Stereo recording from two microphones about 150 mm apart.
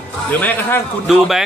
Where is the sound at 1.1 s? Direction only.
5° right (ahead or behind).